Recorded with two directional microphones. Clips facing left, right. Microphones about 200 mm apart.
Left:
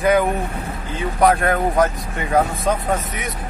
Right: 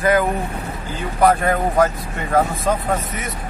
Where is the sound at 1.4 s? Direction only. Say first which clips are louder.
Even; 5° right (ahead or behind).